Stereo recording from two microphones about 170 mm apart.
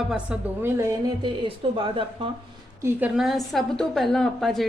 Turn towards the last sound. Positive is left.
turn(degrees=0)  # may be behind; listen again after turning